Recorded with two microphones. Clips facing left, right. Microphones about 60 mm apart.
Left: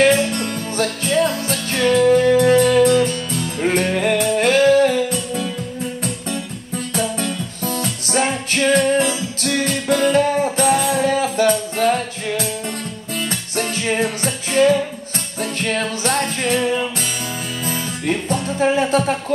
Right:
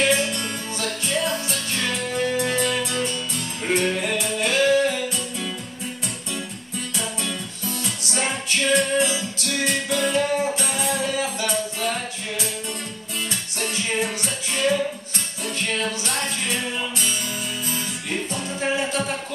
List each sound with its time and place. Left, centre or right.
0.0 s music: left
6.9 s music: left
18.0 s music: left